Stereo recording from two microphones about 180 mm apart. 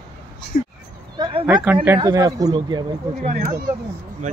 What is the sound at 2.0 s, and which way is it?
Speech, 20° right (ahead or behind).